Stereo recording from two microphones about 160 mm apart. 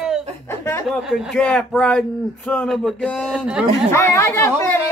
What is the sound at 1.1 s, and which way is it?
Speech, 5° left (ahead or behind).